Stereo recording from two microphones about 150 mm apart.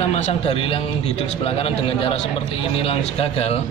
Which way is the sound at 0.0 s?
45° left (ahead or behind).